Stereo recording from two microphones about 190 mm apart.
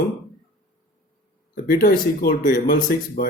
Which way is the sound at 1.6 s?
50° left (ahead or behind).